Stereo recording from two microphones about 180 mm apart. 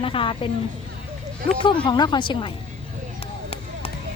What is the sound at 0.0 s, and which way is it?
Speech, 30° left (ahead or behind).